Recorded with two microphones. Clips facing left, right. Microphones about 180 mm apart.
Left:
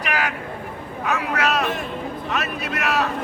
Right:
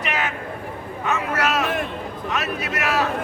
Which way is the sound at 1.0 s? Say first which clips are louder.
Even; centre (ahead or behind).